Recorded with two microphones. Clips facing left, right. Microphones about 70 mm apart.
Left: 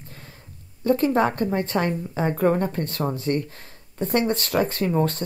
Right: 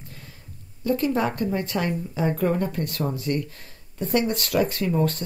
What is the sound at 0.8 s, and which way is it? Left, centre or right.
Speech, left.